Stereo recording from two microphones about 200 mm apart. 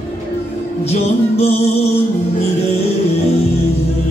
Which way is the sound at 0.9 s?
30° left (ahead or behind).